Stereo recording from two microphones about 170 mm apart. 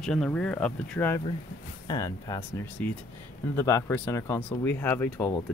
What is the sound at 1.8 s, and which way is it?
Speech, 25° left (ahead or behind).